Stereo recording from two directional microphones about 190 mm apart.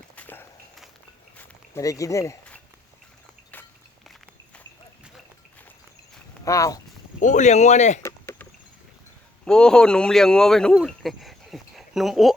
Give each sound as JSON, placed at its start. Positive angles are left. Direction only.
{"t": 0.2, "sound": "walk", "side_deg": 10}
{"t": 3.5, "sound": "walk", "side_deg": 5}
{"t": 6.4, "sound": "speech", "side_deg": 15}
{"t": 7.2, "sound": "speech", "side_deg": 40}
{"t": 8.0, "sound": "a sound", "side_deg": 15}
{"t": 9.4, "sound": "speech", "side_deg": 5}